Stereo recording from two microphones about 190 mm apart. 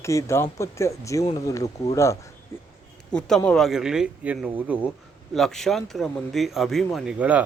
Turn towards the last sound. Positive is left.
turn(degrees=-5)  # may be behind; listen again after turning